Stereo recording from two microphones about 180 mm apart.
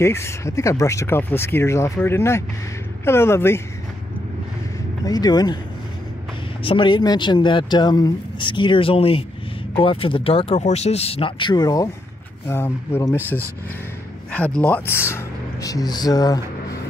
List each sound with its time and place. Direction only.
0.0 s speech: 15° left (ahead or behind)
5.0 s speech: 20° left (ahead or behind)
6.6 s speech: 30° left (ahead or behind)